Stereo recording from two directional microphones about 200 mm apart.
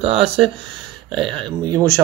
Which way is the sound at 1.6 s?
20° right (ahead or behind).